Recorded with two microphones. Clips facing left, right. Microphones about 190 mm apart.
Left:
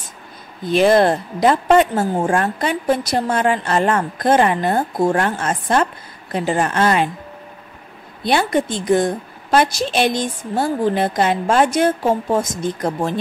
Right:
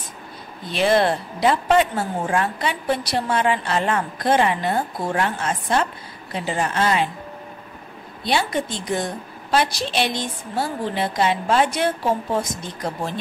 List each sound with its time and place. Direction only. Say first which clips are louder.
0.7 s a woman's voice: left 5 dB; 45° left (ahead or behind)
8.2 s a woman's voice: left 5 dB; 55° left (ahead or behind)